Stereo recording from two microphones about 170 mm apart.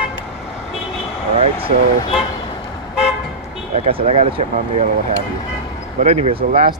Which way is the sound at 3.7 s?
35° right (ahead or behind).